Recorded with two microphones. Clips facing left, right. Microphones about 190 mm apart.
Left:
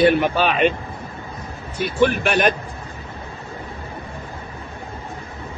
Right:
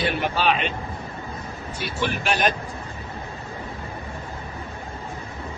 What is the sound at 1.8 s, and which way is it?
Speech, 55° left (ahead or behind).